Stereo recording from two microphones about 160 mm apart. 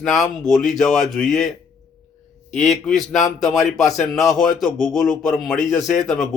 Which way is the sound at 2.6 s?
Centre (ahead or behind).